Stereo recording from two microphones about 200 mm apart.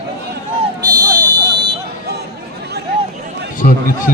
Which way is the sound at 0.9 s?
20° right (ahead or behind).